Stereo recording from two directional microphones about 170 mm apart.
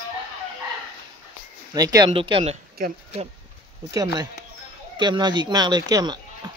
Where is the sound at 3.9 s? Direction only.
20° right (ahead or behind).